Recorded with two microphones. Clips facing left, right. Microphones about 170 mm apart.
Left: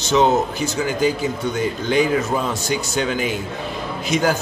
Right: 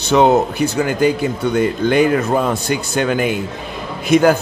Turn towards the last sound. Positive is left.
turn(degrees=-55)  # may be behind; listen again after turning